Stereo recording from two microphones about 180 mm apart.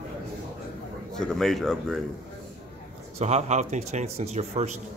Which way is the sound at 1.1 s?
Centre (ahead or behind).